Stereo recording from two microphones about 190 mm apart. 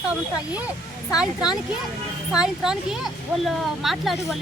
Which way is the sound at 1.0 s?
5° right (ahead or behind).